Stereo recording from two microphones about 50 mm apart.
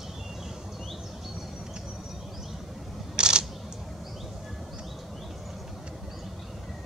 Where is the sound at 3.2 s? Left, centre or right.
Centre.